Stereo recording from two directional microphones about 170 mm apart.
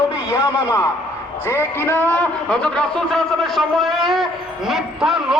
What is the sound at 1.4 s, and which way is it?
A man's voice, 15° left (ahead or behind).